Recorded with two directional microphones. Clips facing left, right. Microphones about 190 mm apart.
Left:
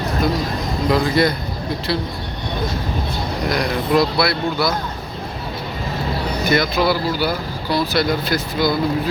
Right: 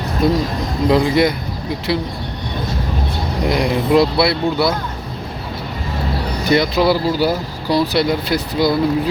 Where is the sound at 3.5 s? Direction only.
25° right (ahead or behind).